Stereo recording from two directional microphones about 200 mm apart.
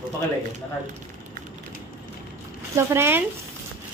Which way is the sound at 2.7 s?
10° right (ahead or behind).